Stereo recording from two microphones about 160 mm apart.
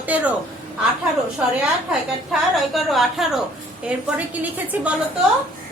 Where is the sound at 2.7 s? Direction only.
Centre (ahead or behind).